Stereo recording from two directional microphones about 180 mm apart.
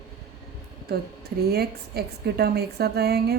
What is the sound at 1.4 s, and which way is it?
A woman's voice, 60° right (ahead or behind).